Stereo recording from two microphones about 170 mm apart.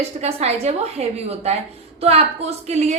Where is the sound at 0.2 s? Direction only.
40° right (ahead or behind).